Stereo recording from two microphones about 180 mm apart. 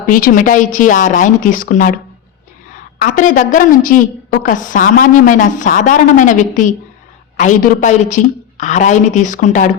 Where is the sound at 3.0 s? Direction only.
45° left (ahead or behind).